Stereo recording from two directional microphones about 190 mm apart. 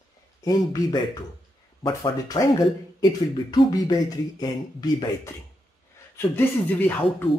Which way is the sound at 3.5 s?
20° left (ahead or behind).